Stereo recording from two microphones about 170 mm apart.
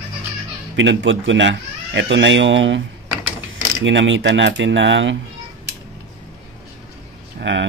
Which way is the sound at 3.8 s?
90° right.